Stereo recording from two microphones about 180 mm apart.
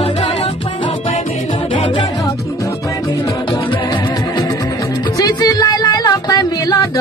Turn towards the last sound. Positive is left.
turn(degrees=20)  # may be behind; listen again after turning